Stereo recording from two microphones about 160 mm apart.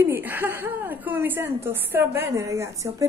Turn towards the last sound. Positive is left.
turn(degrees=-20)  # may be behind; listen again after turning